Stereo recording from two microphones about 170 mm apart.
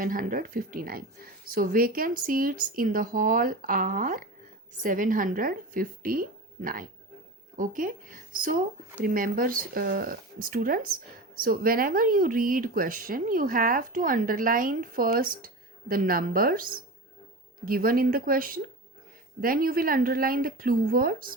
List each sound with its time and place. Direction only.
0.0 s speech: 55° right (ahead or behind)